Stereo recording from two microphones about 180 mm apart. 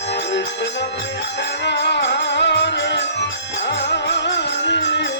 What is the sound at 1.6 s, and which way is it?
Music, 75° left (ahead or behind).